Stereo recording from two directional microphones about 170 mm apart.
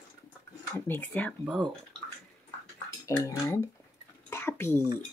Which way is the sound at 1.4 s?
10° right (ahead or behind).